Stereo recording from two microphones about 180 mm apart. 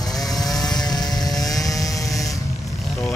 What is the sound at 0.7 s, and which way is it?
Vehicle, 20° left (ahead or behind).